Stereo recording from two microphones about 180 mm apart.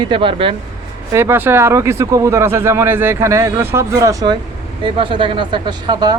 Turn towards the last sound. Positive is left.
turn(degrees=-25)  # may be behind; listen again after turning